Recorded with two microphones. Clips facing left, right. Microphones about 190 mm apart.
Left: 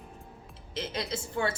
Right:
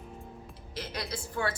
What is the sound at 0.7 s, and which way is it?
Speech, 25° left (ahead or behind).